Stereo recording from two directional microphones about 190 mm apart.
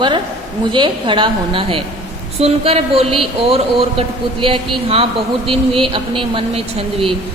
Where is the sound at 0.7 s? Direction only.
25° right (ahead or behind).